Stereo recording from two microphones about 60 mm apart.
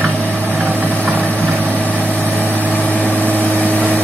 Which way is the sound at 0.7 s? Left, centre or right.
Right.